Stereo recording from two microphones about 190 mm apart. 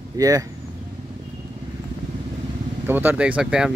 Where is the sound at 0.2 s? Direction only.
20° right (ahead or behind).